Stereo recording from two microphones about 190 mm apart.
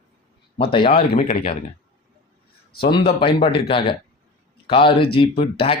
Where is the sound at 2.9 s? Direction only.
25° left (ahead or behind).